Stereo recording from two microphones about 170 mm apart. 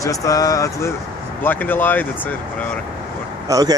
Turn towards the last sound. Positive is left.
turn(degrees=-20)  # may be behind; listen again after turning